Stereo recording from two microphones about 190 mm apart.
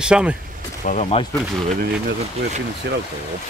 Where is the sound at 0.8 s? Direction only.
40° left (ahead or behind).